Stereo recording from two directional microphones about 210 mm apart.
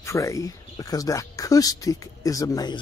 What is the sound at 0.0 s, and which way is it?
Speech, 15° left (ahead or behind).